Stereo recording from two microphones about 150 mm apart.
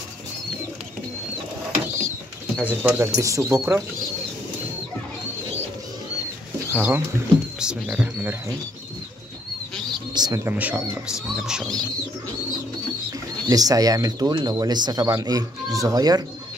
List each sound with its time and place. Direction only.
2.6 s speech: 10° right (ahead or behind)
6.7 s speech: 15° right (ahead or behind)
10.1 s speech: 25° right (ahead or behind)
10.4 s speech: 10° right (ahead or behind)
13.5 s speech: 25° right (ahead or behind)